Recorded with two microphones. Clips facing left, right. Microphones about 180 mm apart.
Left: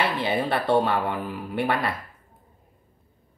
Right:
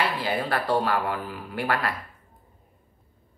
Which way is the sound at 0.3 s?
25° left (ahead or behind).